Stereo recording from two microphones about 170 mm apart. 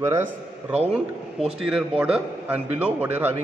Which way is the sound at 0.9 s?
5° right (ahead or behind).